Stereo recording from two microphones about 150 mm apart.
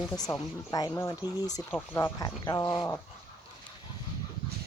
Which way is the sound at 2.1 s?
25° left (ahead or behind).